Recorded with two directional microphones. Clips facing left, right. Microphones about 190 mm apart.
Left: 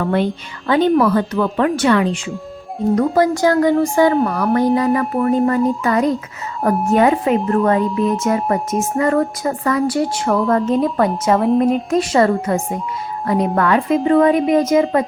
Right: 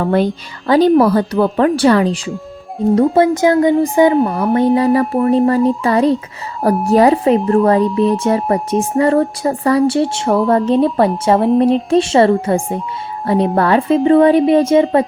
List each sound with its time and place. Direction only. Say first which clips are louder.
0.0 s speech: right 3 dB; 40° right (ahead or behind)